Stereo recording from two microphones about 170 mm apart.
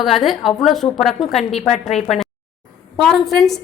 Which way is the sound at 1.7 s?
40° left (ahead or behind).